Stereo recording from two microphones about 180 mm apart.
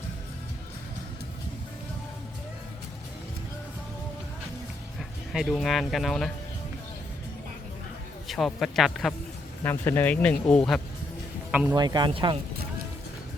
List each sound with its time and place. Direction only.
4.9 s speech: centre (ahead or behind)
8.3 s speech: centre (ahead or behind)
11.7 s speech: 20° right (ahead or behind)